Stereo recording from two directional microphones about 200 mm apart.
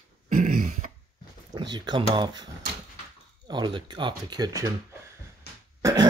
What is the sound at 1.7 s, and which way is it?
Speech, 20° right (ahead or behind).